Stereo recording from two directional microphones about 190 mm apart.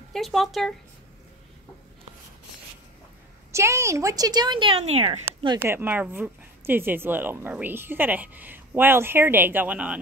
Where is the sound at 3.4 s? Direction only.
15° right (ahead or behind); by 5.2 s 35° right (ahead or behind).